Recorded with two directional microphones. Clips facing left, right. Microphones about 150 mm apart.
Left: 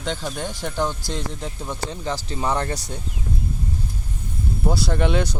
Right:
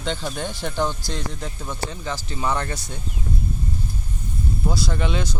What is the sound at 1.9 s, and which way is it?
Speech, 30° left (ahead or behind).